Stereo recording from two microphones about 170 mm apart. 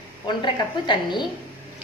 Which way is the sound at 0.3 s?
25° left (ahead or behind).